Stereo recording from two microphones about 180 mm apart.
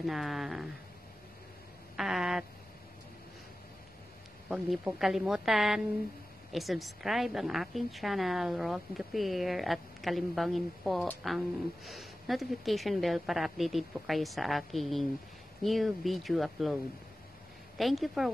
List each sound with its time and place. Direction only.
0.0 s a woman's voice: centre (ahead or behind)
2.0 s a woman's voice: centre (ahead or behind)
4.5 s a woman's voice: 5° right (ahead or behind)
17.7 s a woman's voice: centre (ahead or behind)